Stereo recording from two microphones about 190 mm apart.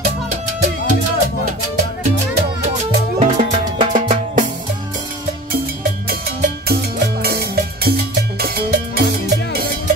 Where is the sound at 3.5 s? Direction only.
30° right (ahead or behind).